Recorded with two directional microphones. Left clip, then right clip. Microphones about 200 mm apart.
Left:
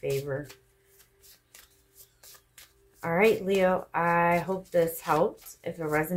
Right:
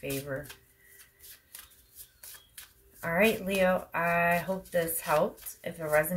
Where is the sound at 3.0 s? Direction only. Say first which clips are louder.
Left 3 dB; 35° left (ahead or behind).